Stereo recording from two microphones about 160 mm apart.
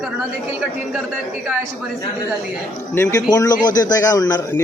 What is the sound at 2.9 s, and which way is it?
Speech, 15° left (ahead or behind).